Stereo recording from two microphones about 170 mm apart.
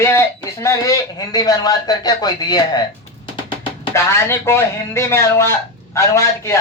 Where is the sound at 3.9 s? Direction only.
15° left (ahead or behind).